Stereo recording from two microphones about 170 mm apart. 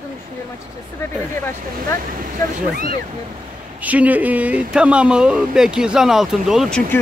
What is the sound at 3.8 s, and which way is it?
Speech, 10° right (ahead or behind).